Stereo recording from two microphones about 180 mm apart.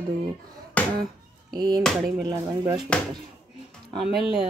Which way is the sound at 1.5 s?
20° right (ahead or behind).